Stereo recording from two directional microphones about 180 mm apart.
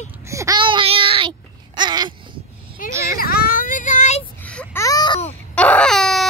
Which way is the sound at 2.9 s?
15° right (ahead or behind).